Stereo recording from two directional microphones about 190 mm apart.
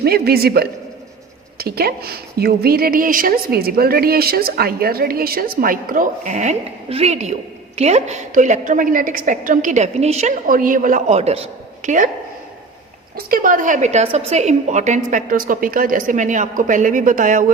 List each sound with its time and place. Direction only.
0.0 s a man's voice: 55° right (ahead or behind); by 11.4 s 35° right (ahead or behind)
13.1 s a woman's voice: 50° right (ahead or behind)